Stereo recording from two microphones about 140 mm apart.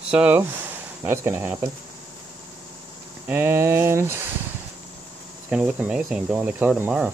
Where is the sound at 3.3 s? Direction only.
15° right (ahead or behind).